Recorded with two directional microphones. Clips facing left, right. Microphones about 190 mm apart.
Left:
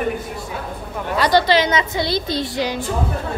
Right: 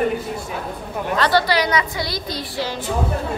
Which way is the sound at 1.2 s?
20° left (ahead or behind).